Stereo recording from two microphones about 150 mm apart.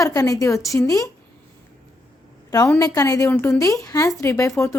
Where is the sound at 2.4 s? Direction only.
25° left (ahead or behind).